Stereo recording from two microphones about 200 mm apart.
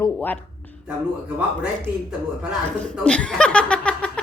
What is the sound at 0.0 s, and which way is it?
Speech, 10° left (ahead or behind).